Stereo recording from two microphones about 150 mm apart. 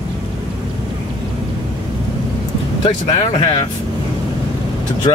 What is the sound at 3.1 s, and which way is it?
Speech, 35° left (ahead or behind).